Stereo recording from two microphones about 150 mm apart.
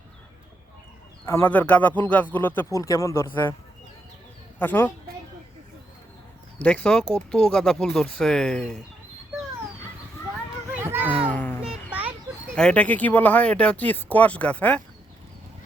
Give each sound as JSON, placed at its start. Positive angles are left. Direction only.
{"t": 1.2, "sound": "speech", "side_deg": 20}
{"t": 4.6, "sound": "speech", "side_deg": 15}
{"t": 6.6, "sound": "speech", "side_deg": 10}
{"t": 10.7, "sound": "children playing", "side_deg": -10}
{"t": 11.3, "sound": "music", "side_deg": 15}
{"t": 11.9, "sound": "children playing", "side_deg": -10}
{"t": 12.5, "sound": "speech", "side_deg": 5}